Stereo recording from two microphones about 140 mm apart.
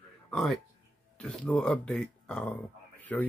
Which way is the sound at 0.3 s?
5° left (ahead or behind).